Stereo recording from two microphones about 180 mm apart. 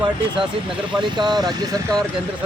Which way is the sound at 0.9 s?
25° right (ahead or behind).